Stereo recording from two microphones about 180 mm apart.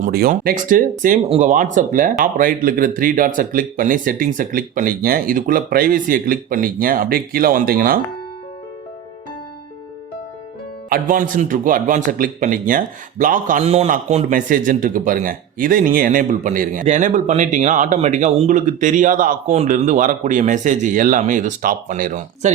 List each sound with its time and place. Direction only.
0.0 s speech: 55° right (ahead or behind)
10.8 s speech: 50° right (ahead or behind)